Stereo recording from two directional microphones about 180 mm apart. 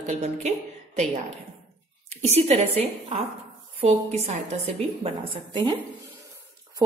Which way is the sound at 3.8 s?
35° right (ahead or behind).